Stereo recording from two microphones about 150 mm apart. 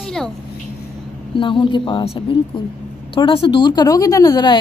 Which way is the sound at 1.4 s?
35° left (ahead or behind).